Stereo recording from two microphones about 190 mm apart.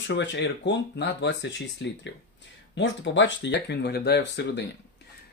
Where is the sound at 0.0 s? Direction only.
70° left (ahead or behind).